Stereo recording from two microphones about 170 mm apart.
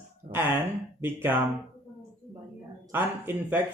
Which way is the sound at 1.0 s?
10° right (ahead or behind).